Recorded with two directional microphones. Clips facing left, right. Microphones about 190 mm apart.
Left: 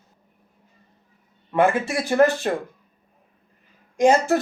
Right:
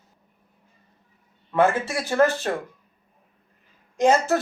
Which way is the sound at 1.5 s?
15° left (ahead or behind).